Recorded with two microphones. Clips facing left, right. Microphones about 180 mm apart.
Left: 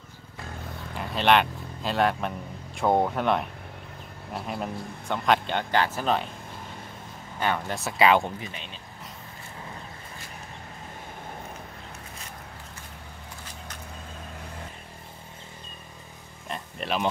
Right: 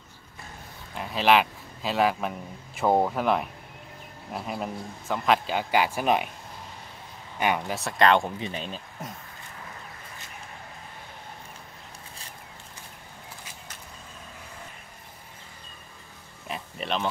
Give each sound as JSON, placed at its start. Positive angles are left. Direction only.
{"t": 0.9, "sound": "a man's voice", "side_deg": 0}
{"t": 7.3, "sound": "speech", "side_deg": -15}
{"t": 7.7, "sound": "a man's voice", "side_deg": 0}
{"t": 16.4, "sound": "music", "side_deg": 0}